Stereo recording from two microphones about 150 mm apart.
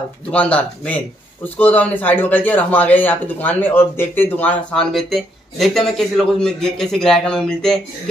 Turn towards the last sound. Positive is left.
turn(degrees=5)  # may be behind; listen again after turning